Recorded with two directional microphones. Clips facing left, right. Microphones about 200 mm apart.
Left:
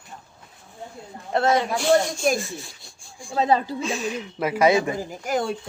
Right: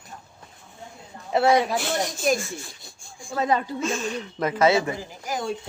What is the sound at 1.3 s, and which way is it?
Speech, 5° right (ahead or behind).